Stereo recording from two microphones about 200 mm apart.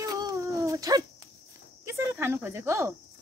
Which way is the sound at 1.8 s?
15° right (ahead or behind).